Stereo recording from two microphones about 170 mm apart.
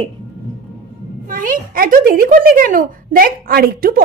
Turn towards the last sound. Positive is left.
turn(degrees=-60)  # may be behind; listen again after turning